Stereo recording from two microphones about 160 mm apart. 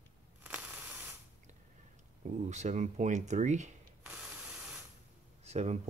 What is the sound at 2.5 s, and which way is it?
Speech, 45° right (ahead or behind).